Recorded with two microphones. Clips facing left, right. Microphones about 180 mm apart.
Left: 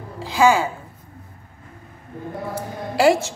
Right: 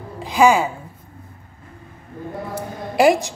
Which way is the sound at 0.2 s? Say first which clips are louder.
Right 2 dB; 15° right (ahead or behind).